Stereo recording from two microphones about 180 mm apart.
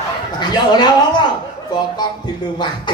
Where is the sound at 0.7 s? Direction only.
25° left (ahead or behind).